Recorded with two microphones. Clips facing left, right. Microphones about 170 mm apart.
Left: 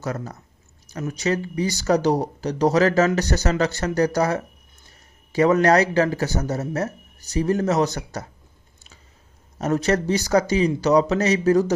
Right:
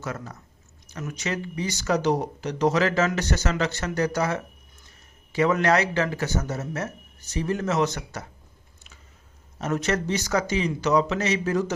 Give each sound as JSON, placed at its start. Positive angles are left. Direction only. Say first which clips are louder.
{"t": 0.0, "sound": "speech", "louder": "left 5 dB", "side_deg": 40}
{"t": 9.6, "sound": "speech", "louder": "left 5 dB", "side_deg": 35}